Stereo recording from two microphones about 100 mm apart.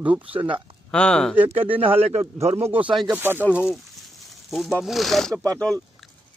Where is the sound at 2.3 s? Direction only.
90° right.